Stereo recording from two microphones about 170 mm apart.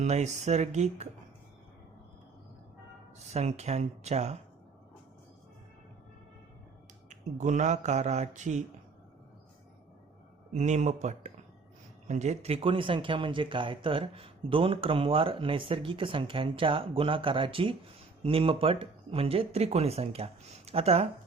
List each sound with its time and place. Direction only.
0.0 s speech: 40° right (ahead or behind)
3.3 s speech: 40° right (ahead or behind)
7.1 s speech: 45° right (ahead or behind)
10.5 s speech: 40° right (ahead or behind)